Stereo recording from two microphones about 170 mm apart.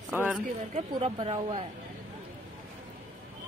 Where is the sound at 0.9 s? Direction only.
35° right (ahead or behind).